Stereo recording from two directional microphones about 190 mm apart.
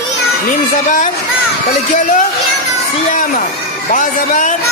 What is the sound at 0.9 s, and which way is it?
A man's voice, 40° left (ahead or behind).